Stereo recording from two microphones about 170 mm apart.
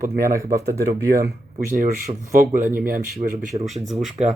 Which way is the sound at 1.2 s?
60° right (ahead or behind).